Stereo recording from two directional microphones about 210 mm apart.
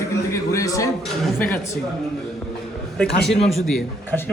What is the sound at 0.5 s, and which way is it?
Speech, 15° left (ahead or behind).